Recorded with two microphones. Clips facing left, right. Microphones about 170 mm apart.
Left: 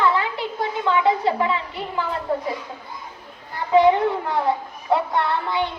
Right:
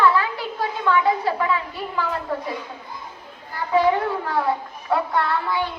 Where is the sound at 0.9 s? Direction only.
20° left (ahead or behind).